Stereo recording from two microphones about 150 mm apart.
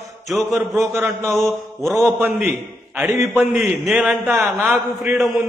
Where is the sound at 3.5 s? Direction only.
15° right (ahead or behind).